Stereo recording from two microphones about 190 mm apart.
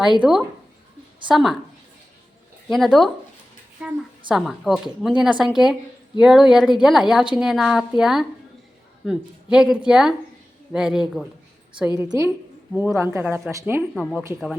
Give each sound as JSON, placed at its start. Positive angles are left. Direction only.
{"t": 0.2, "sound": "a woman's voice", "side_deg": -5}
{"t": 2.7, "sound": "a woman's voice", "side_deg": 0}
{"t": 4.3, "sound": "a woman's voice", "side_deg": 0}
{"t": 11.9, "sound": "speech", "side_deg": -15}
{"t": 13.9, "sound": "a woman's voice", "side_deg": 0}